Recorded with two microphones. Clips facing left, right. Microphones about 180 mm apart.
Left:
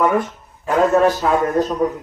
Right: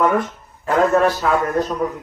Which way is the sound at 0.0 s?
5° left (ahead or behind).